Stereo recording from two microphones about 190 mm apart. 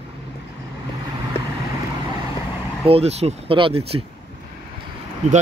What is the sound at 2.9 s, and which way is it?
Speech, 35° right (ahead or behind).